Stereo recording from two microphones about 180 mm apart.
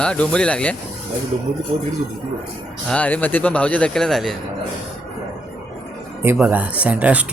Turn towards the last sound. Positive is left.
turn(degrees=-10)  # may be behind; listen again after turning